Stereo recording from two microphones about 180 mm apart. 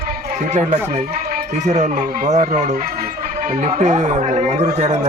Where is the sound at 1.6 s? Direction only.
40° right (ahead or behind).